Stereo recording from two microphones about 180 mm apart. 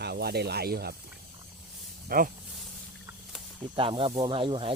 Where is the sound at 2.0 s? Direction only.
50° right (ahead or behind).